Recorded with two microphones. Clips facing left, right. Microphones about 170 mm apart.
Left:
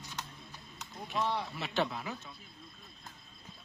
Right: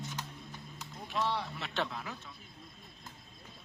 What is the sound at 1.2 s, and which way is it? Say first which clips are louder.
Speech: even; 10° left (ahead or behind).